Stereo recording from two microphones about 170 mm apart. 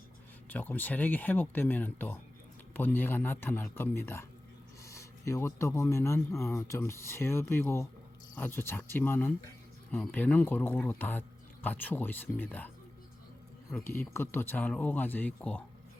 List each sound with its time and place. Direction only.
0.5 s speech: 10° left (ahead or behind)